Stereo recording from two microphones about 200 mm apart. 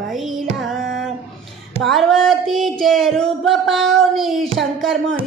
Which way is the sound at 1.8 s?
Centre (ahead or behind).